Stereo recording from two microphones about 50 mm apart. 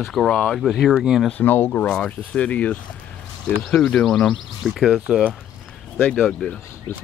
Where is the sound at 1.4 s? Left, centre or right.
Left.